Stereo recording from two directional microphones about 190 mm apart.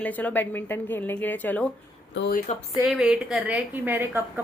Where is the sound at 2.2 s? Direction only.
55° left (ahead or behind).